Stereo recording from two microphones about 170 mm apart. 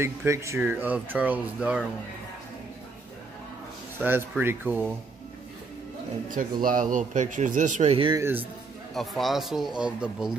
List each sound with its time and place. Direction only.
0.0 s speech: 15° right (ahead or behind)
4.0 s speech: 10° right (ahead or behind)
6.6 s speech: 55° right (ahead or behind)
8.1 s speech: 15° right (ahead or behind)
8.9 s speech: centre (ahead or behind)